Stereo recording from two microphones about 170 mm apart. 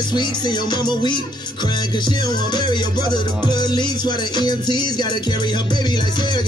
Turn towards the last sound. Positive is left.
turn(degrees=25)  # may be behind; listen again after turning